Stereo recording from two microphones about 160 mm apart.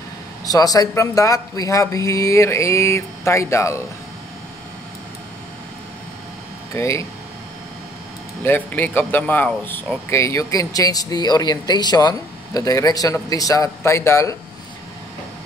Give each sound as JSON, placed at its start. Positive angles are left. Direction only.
{"t": 0.5, "sound": "speech", "side_deg": 20}
{"t": 6.7, "sound": "speech", "side_deg": 20}
{"t": 8.5, "sound": "speech", "side_deg": 10}